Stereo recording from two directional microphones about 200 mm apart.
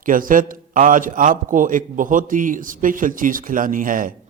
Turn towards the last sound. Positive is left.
turn(degrees=-45)  # may be behind; listen again after turning